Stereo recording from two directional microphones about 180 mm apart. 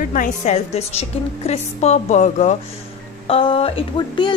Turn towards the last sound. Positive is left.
turn(degrees=30)  # may be behind; listen again after turning